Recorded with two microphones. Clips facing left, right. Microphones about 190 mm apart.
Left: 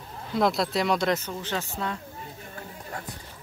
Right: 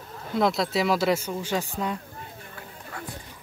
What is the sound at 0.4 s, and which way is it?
Speech, centre (ahead or behind).